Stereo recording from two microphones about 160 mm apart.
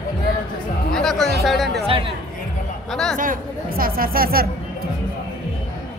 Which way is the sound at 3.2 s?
60° right (ahead or behind).